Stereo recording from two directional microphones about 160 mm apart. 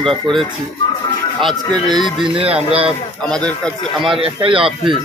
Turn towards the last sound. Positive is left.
turn(degrees=-35)  # may be behind; listen again after turning